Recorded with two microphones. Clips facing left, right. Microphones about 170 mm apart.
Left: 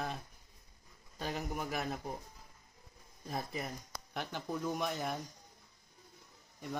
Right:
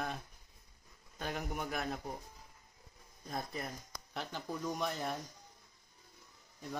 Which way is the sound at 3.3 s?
5° left (ahead or behind).